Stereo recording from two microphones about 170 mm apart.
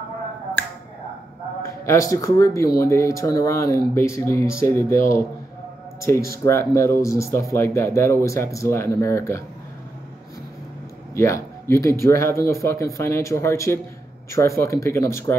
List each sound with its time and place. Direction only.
1.6 s a man's voice: 20° left (ahead or behind)
4.9 s a man's voice: 55° left (ahead or behind)
6.0 s speech: 15° left (ahead or behind)
11.1 s speech: 15° left (ahead or behind)